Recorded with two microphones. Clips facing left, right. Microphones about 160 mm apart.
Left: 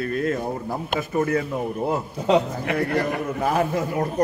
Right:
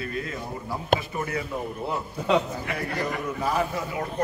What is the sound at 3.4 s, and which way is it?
Speech, 50° left (ahead or behind).